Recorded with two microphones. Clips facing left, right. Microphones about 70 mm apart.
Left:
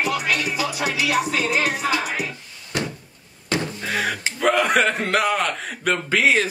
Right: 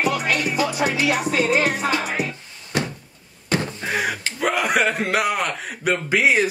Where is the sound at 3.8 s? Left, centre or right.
Centre.